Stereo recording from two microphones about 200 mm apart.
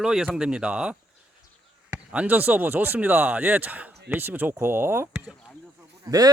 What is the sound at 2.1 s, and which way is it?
Speech, 5° right (ahead or behind).